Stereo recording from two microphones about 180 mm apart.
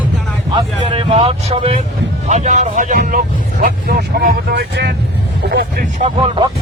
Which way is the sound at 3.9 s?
60° right (ahead or behind).